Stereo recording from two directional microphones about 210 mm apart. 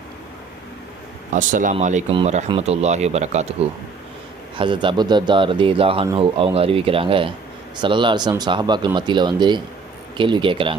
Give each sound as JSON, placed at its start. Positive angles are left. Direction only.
{"t": 1.3, "sound": "speech", "side_deg": -40}